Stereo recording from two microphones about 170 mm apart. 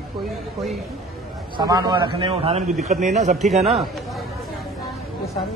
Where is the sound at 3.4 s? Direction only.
Centre (ahead or behind).